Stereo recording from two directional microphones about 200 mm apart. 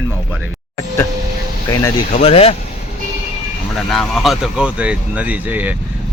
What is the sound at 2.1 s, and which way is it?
Speech, 30° left (ahead or behind).